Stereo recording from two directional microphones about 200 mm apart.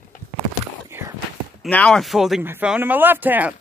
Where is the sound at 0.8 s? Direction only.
15° right (ahead or behind).